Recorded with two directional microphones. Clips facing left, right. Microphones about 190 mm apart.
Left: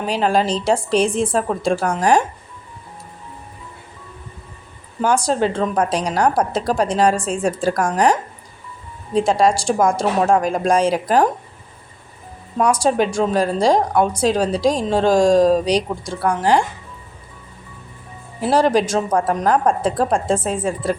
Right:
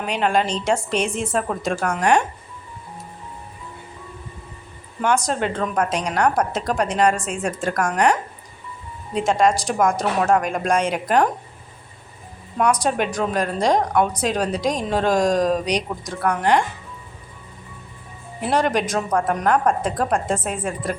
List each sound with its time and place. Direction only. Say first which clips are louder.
0.0 s a woman's voice: left 3 dB; 35° left (ahead or behind)
5.0 s a woman's voice: left 3 dB; 30° left (ahead or behind)
9.1 s a woman's voice: left 3 dB; 35° left (ahead or behind)
12.5 s a woman's voice: left 3 dB; 30° left (ahead or behind)
18.3 s a woman's voice: left 5 dB; 30° left (ahead or behind)